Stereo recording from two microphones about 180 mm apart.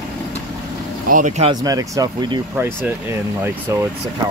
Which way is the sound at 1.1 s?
45° right (ahead or behind).